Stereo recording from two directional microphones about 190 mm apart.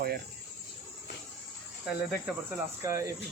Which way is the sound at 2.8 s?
15° right (ahead or behind).